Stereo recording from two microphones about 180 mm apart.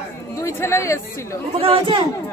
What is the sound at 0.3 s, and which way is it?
Speech, 15° left (ahead or behind).